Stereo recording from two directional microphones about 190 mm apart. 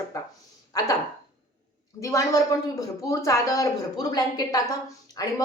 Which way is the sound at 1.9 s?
15° left (ahead or behind).